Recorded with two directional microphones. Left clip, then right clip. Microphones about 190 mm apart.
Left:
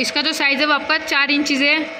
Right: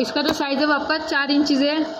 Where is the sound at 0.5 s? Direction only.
5° left (ahead or behind).